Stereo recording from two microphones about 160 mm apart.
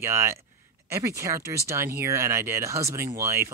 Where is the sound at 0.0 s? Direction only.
15° right (ahead or behind).